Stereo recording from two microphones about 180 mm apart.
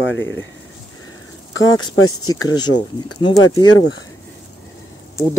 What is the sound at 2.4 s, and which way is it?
Speech, 25° left (ahead or behind).